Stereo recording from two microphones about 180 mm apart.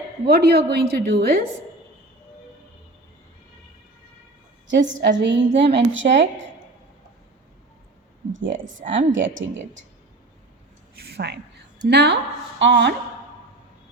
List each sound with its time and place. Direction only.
0.3 s a woman's voice: 65° right (ahead or behind)
5.0 s a sound: 85° right
5.5 s speech: 75° right (ahead or behind); by 6.2 s 90° right
8.3 s speech: 90° right
8.8 s a woman's voice: 45° right (ahead or behind)
9.1 s speech: 90° right
11.0 s a woman's voice: 65° right (ahead or behind); by 12.9 s 80° right